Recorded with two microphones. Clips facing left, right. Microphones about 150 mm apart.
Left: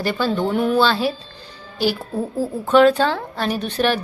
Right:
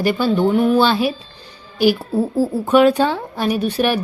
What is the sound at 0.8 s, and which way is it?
A woman's voice, 15° right (ahead or behind).